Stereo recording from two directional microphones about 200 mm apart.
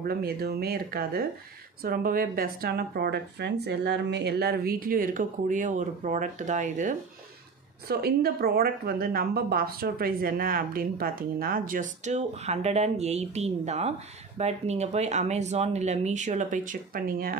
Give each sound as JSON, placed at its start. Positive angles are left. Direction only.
{"t": 0.0, "sound": "a woman's voice", "side_deg": -50}
{"t": 7.9, "sound": "a woman's voice", "side_deg": -50}